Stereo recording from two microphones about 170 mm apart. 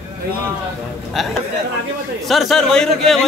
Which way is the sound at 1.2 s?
Centre (ahead or behind).